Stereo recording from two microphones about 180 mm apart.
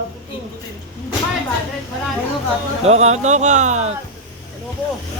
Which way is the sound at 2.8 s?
35° right (ahead or behind).